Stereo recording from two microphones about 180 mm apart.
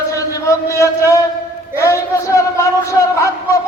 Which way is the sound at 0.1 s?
15° left (ahead or behind).